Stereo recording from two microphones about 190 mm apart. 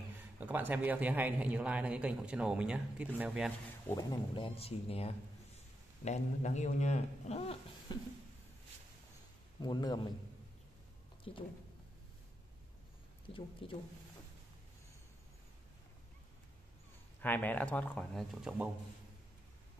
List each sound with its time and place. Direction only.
0.4 s speech: 10° right (ahead or behind)
3.9 s a man's voice: 25° left (ahead or behind)
9.6 s speech: 20° left (ahead or behind)
11.3 s speech: 30° left (ahead or behind)
13.3 s speech: 25° left (ahead or behind)
17.2 s speech: 10° left (ahead or behind)
18.4 s speech: 5° right (ahead or behind)